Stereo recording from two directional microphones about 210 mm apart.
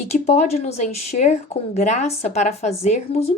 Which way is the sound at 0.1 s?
30° left (ahead or behind).